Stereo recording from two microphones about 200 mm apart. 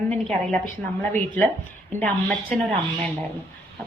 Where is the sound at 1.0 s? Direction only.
10° left (ahead or behind).